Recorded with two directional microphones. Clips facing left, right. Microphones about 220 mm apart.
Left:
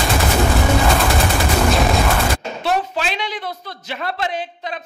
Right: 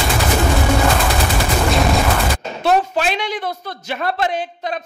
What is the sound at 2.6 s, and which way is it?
A man's voice, 50° right (ahead or behind).